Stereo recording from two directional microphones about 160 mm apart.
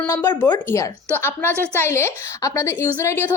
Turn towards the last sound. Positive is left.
turn(degrees=15)  # may be behind; listen again after turning